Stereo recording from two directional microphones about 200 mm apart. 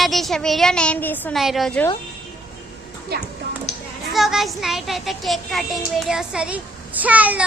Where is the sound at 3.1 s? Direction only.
55° right (ahead or behind).